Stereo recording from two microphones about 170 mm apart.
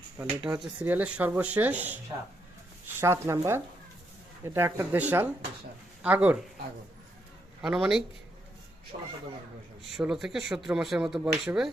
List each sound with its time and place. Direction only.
0.3 s speech: 25° right (ahead or behind)
0.6 s speech: 10° right (ahead or behind)
3.0 s speech: 15° right (ahead or behind)
7.6 s speech: 5° right (ahead or behind)
8.9 s speech: 40° right (ahead or behind)
9.9 s speech: 5° right (ahead or behind)
11.2 s speech: 10° right (ahead or behind)